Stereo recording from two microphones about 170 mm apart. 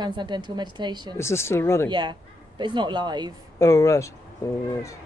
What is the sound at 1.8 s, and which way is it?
A woman's voice, 25° right (ahead or behind).